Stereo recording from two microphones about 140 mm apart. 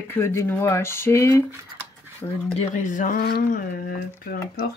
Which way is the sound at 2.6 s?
60° left (ahead or behind).